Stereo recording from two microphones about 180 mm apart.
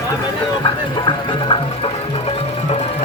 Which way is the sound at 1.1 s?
30° left (ahead or behind).